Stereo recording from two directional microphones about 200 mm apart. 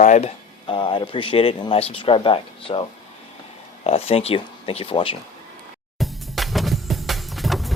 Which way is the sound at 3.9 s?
30° left (ahead or behind).